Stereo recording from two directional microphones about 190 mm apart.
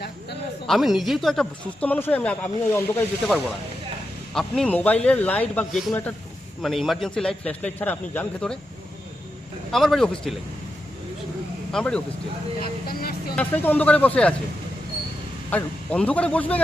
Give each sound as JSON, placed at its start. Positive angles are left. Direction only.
{"t": 0.7, "sound": "speech", "side_deg": 0}
{"t": 4.4, "sound": "speech", "side_deg": 5}
{"t": 9.7, "sound": "speech", "side_deg": 0}
{"t": 11.7, "sound": "speech", "side_deg": 5}
{"t": 12.9, "sound": "speech", "side_deg": 50}
{"t": 13.3, "sound": "speech", "side_deg": 10}
{"t": 15.4, "sound": "speech", "side_deg": 10}